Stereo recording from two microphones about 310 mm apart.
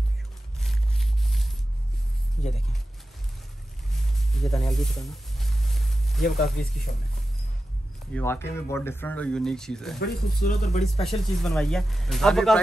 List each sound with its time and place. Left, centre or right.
0.6 s a sound: centre
4.4 s a sound: centre
6.2 s speech: left
8.1 s speech: centre
9.9 s speech: left
11.4 s speech: centre